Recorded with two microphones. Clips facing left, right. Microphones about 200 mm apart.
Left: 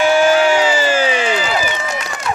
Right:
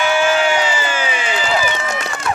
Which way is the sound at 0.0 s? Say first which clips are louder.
Left 4 dB; 40° left (ahead or behind).